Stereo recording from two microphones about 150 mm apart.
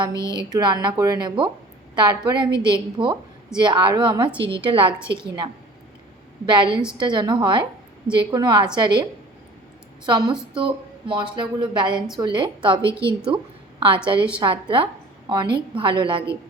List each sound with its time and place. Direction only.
0.2 s music: 20° left (ahead or behind)
0.5 s a woman's voice: 30° right (ahead or behind)
10.1 s a woman's voice: 30° right (ahead or behind)